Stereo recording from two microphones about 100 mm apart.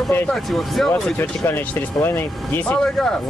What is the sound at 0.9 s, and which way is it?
Speech, 20° left (ahead or behind).